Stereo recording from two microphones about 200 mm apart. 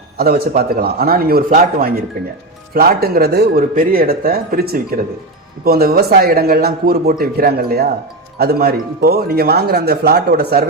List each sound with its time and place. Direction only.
0.2 s speech: 50° right (ahead or behind)